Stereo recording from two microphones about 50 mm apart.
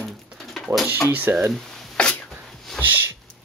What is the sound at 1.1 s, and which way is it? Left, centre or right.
Speech, right.